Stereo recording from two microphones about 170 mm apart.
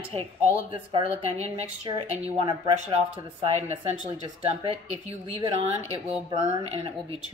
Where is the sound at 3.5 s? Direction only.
40° right (ahead or behind).